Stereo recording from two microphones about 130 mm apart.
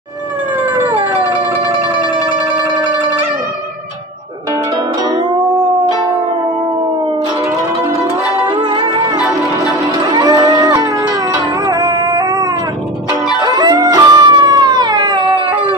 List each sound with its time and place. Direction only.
0.7 s howl: 35° right (ahead or behind)
2.5 s music: 30° right (ahead or behind)
8.5 s music: 40° right (ahead or behind)
10.1 s livestock: 30° right (ahead or behind)
11.6 s music: 30° right (ahead or behind)
13.4 s howl: 30° right (ahead or behind)